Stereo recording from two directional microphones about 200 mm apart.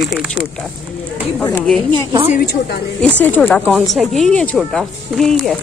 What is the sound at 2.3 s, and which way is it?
Speech, 50° left (ahead or behind).